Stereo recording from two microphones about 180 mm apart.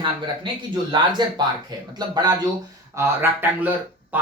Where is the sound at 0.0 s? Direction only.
25° right (ahead or behind).